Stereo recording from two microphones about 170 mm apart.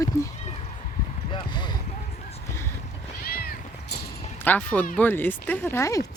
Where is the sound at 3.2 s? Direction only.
60° left (ahead or behind).